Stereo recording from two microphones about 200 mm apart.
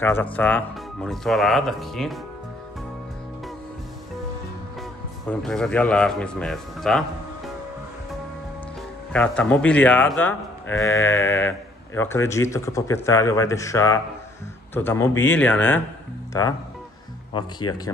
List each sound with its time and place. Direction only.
0.0 s speech: 10° left (ahead or behind)
5.2 s speech: centre (ahead or behind)
9.1 s speech: 5° left (ahead or behind)